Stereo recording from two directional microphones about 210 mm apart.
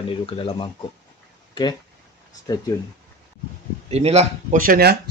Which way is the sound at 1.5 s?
20° left (ahead or behind).